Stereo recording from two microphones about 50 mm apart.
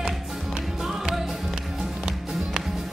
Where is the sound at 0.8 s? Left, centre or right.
Centre.